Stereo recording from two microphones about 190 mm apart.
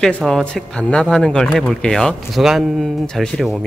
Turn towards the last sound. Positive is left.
turn(degrees=0)  # may be behind; listen again after turning